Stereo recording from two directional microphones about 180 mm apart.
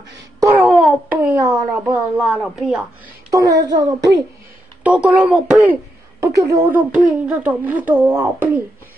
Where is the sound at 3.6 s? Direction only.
20° right (ahead or behind).